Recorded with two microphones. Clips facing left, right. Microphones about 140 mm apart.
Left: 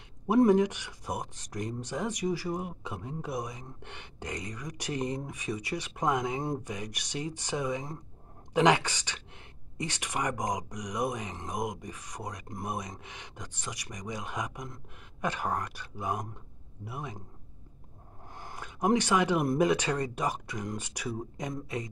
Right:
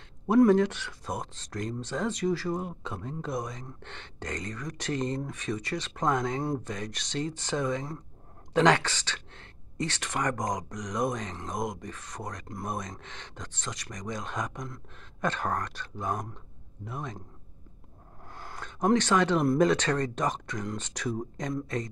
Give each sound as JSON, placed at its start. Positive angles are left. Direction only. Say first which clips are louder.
{"t": 0.5, "sound": "speech", "louder": "right 1 dB", "side_deg": 15}
{"t": 18.3, "sound": "speech", "louder": "right 1 dB", "side_deg": 15}